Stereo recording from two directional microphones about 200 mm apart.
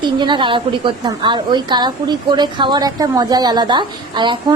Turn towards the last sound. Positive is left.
turn(degrees=-25)  # may be behind; listen again after turning